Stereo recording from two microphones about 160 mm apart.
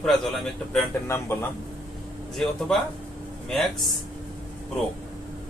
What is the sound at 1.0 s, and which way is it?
Speech, 15° left (ahead or behind).